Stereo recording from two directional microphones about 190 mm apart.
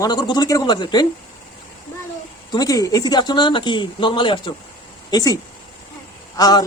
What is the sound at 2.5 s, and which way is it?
Speech, 20° left (ahead or behind).